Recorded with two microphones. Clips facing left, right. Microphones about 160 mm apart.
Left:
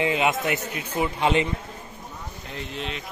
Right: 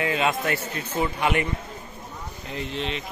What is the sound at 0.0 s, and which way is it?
A man's voice, 20° left (ahead or behind).